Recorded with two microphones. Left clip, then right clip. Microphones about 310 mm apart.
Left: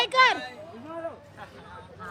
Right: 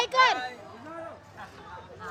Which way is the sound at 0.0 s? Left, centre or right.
Left.